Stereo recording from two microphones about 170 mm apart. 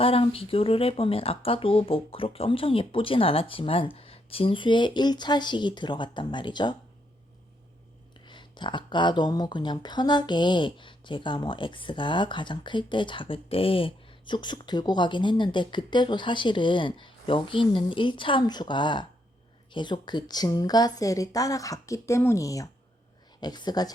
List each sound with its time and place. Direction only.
0.0 s speech: 35° left (ahead or behind)
8.2 s speech: 25° left (ahead or behind)